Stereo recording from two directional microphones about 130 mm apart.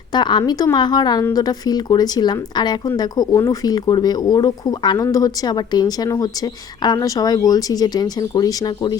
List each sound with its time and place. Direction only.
0.1 s speech: 35° left (ahead or behind)